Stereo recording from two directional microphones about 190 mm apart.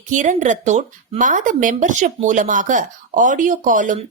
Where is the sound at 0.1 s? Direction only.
40° right (ahead or behind).